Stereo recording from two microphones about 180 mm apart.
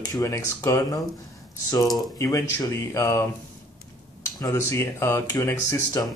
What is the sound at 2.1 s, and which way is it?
Speech, 15° left (ahead or behind).